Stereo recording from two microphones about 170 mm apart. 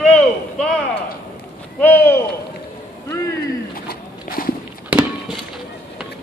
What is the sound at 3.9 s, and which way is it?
Walk, 60° left (ahead or behind).